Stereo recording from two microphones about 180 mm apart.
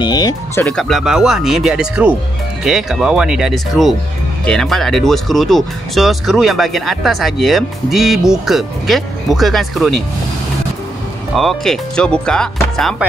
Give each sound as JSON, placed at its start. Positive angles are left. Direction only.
{"t": 0.0, "sound": "speech", "side_deg": 20}
{"t": 0.6, "sound": "speech", "side_deg": 5}
{"t": 11.3, "sound": "speech", "side_deg": 0}